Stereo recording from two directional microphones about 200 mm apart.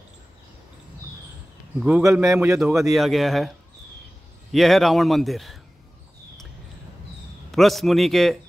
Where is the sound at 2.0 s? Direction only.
15° right (ahead or behind).